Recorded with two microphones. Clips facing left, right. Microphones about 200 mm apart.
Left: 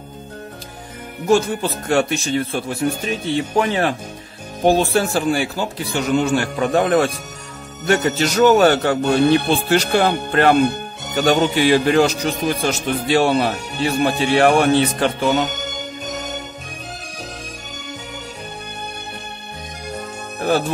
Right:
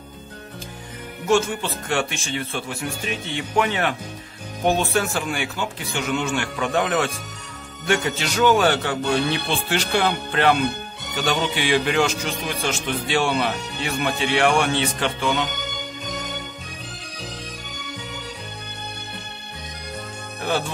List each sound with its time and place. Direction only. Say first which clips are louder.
1.3 s speech: left 4 dB; 40° left (ahead or behind)
16.1 s music: left 3 dB; 45° left (ahead or behind)
20.3 s music: left 6 dB; 40° left (ahead or behind)